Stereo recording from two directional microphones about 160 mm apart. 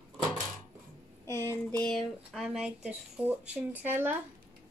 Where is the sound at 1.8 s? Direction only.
Centre (ahead or behind).